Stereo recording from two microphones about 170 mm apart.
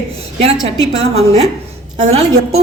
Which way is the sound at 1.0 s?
40° right (ahead or behind).